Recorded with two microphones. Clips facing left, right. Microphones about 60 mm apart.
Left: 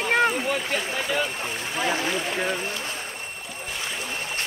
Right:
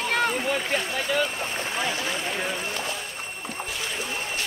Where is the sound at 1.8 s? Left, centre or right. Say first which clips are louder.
Left 3 dB; left.